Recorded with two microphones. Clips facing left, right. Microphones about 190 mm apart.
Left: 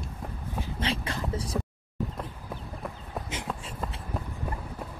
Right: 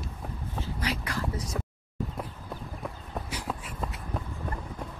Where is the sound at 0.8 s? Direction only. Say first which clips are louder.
Left 1 dB; 25° left (ahead or behind).